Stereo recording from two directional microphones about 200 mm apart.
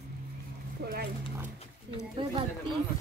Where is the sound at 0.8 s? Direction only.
55° right (ahead or behind).